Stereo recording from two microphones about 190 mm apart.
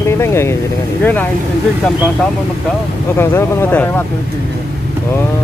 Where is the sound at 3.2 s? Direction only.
10° left (ahead or behind).